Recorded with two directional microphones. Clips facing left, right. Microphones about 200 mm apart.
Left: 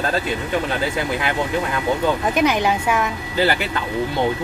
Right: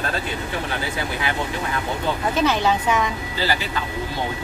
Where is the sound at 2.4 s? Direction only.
15° left (ahead or behind).